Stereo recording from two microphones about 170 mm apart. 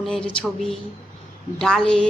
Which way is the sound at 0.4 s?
Centre (ahead or behind).